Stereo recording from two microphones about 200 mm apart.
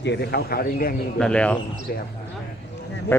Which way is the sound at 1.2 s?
5° left (ahead or behind).